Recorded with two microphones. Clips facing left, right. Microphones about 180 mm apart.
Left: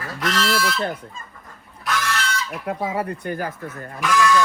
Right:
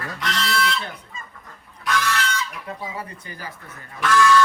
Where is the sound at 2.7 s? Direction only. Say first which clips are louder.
Left 8 dB; 65° left (ahead or behind).